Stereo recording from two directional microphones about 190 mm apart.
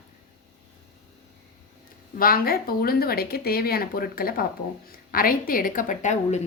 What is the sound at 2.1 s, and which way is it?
A woman's voice, 50° left (ahead or behind).